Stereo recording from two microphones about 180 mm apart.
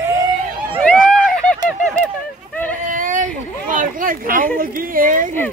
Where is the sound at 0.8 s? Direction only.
5° left (ahead or behind).